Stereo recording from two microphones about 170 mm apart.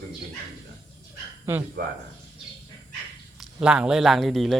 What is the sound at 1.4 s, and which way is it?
Speech, 15° right (ahead or behind).